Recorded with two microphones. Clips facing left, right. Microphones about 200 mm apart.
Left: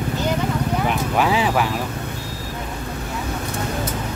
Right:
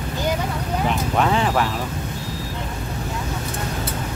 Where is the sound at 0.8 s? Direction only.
5° left (ahead or behind).